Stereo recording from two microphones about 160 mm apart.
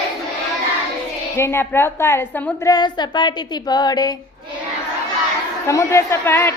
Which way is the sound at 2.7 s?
25° left (ahead or behind).